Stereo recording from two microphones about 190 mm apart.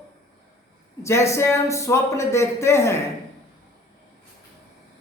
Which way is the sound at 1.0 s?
15° left (ahead or behind).